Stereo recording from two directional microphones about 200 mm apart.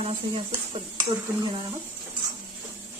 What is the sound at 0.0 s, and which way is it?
Speech, 30° right (ahead or behind).